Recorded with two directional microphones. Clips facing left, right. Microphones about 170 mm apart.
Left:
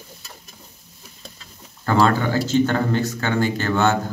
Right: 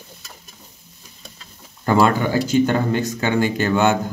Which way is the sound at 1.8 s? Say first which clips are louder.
Right 2 dB; 15° right (ahead or behind).